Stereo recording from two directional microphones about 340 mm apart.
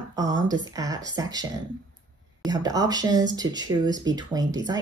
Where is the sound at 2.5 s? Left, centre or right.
Centre.